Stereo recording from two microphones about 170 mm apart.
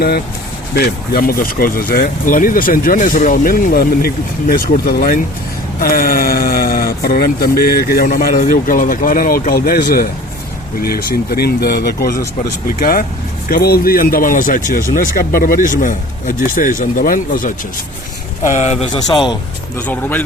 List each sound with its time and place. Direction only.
0.7 s speech: 60° left (ahead or behind); by 18.9 s 40° left (ahead or behind)
18.9 s a man's voice: 25° left (ahead or behind)
19.9 s speech: 10° left (ahead or behind)